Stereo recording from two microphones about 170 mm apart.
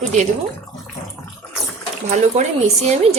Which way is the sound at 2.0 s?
45° right (ahead or behind).